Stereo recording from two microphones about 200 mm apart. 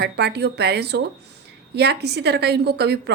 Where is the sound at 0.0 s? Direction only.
55° right (ahead or behind).